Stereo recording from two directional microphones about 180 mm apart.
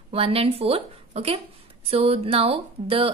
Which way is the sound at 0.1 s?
30° right (ahead or behind).